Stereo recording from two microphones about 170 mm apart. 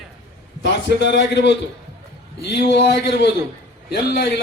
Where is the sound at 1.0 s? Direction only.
90° left.